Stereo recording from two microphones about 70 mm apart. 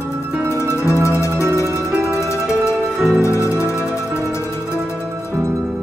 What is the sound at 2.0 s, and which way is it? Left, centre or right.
Music, left.